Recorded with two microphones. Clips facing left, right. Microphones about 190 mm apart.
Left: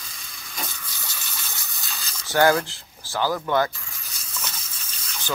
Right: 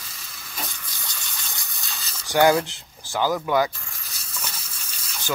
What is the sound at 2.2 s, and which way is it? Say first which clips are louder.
Speech: right 1 dB; 15° right (ahead or behind).